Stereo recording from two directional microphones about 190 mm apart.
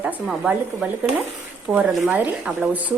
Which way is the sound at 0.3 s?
5° right (ahead or behind).